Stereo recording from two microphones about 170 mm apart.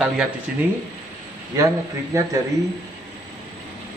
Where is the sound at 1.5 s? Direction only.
20° right (ahead or behind).